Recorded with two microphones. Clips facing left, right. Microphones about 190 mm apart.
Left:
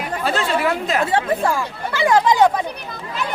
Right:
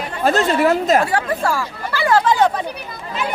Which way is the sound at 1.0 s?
20° left (ahead or behind).